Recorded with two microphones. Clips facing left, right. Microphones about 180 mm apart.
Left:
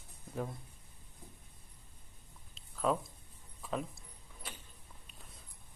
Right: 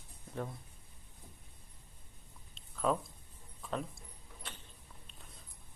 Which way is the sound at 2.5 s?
Centre (ahead or behind).